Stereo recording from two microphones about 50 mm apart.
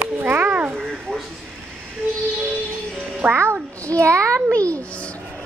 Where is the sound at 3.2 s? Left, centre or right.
Right.